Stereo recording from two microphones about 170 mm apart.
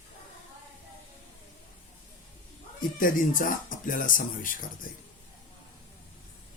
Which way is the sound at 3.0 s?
55° left (ahead or behind).